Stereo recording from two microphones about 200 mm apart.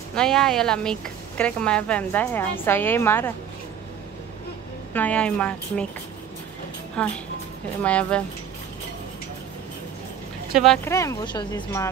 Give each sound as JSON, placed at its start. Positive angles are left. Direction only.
{"t": 0.1, "sound": "a woman's voice", "side_deg": 5}
{"t": 4.9, "sound": "a woman's voice", "side_deg": 5}
{"t": 7.0, "sound": "a woman's voice", "side_deg": 5}
{"t": 10.5, "sound": "speech", "side_deg": 0}
{"t": 10.9, "sound": "speech", "side_deg": 15}